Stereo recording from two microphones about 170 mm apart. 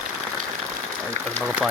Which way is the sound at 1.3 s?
Centre (ahead or behind).